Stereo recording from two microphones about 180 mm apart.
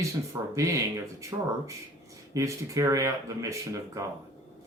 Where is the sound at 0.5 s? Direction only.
15° right (ahead or behind).